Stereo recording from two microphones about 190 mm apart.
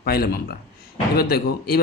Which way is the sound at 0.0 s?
55° left (ahead or behind).